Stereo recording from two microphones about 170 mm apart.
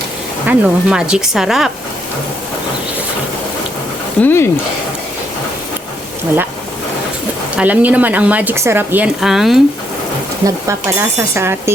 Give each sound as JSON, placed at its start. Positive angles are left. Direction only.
{"t": 0.4, "sound": "speech", "side_deg": -5}
{"t": 4.2, "sound": "speech", "side_deg": 15}
{"t": 7.5, "sound": "speech", "side_deg": -10}
{"t": 10.4, "sound": "speech", "side_deg": -15}